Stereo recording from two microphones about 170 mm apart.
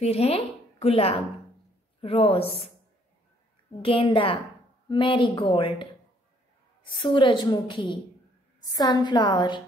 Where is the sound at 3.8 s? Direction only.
30° left (ahead or behind).